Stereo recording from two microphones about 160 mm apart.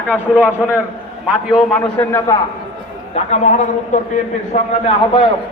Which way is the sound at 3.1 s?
45° left (ahead or behind).